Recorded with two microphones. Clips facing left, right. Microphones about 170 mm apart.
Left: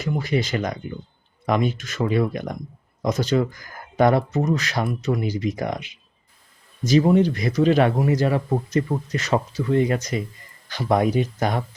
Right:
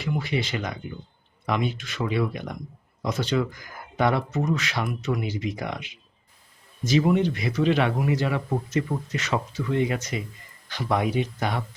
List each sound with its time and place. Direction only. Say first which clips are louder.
0.0 s speech: left 4 dB; 40° left (ahead or behind)